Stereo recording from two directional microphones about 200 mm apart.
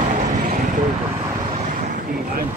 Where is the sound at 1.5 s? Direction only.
40° right (ahead or behind).